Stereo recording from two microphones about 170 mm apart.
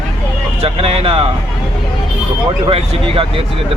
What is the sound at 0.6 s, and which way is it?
Speech, 35° right (ahead or behind).